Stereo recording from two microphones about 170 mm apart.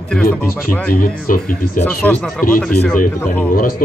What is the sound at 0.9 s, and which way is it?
Speech, 55° left (ahead or behind).